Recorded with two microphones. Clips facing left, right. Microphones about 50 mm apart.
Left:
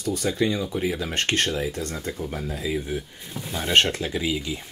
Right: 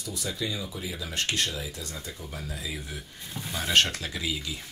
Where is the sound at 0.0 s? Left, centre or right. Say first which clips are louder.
Left 9 dB; left.